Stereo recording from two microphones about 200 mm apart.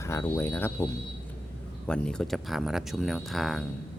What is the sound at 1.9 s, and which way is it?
Speech, 5° left (ahead or behind).